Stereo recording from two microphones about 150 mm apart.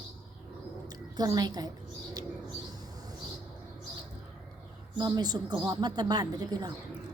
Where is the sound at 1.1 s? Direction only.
25° right (ahead or behind).